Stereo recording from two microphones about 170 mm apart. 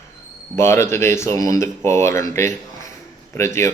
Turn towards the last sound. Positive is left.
turn(degrees=15)  # may be behind; listen again after turning